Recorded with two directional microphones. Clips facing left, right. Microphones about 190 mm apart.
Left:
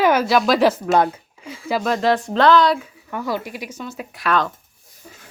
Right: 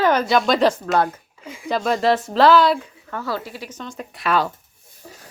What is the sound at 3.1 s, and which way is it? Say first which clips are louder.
A woman's voice: left 2 dB; 15° left (ahead or behind).